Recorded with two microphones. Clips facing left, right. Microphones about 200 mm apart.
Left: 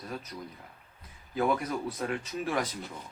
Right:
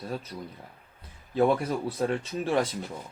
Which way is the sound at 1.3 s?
30° right (ahead or behind).